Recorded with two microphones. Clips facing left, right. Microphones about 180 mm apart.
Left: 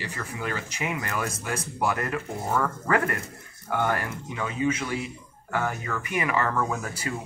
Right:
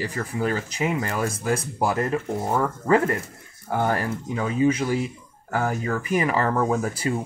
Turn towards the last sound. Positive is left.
turn(degrees=-30)  # may be behind; listen again after turning